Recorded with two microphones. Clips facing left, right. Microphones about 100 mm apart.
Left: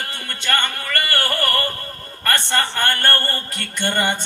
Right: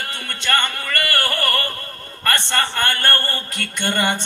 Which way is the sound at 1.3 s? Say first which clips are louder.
Left 1 dB; 25° left (ahead or behind).